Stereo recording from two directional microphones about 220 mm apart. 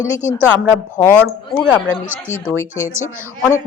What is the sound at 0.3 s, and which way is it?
Speech, 10° right (ahead or behind).